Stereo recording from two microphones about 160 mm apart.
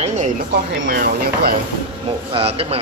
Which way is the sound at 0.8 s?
65° right (ahead or behind).